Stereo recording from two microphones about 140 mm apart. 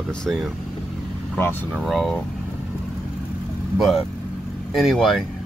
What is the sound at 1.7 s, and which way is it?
Speech, centre (ahead or behind).